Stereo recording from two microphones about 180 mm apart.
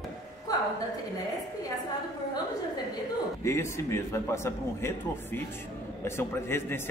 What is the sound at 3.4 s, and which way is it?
A man's voice, 15° left (ahead or behind).